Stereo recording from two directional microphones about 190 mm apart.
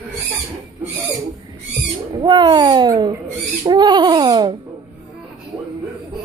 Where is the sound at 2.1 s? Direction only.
25° right (ahead or behind).